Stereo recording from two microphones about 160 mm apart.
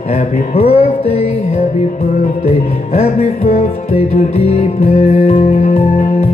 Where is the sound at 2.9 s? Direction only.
40° left (ahead or behind).